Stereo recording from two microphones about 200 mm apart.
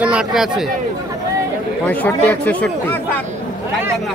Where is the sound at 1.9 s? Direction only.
10° left (ahead or behind).